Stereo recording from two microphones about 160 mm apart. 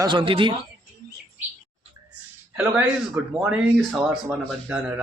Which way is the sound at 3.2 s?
10° right (ahead or behind).